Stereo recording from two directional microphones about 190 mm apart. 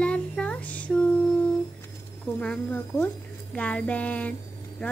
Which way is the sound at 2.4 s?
5° left (ahead or behind).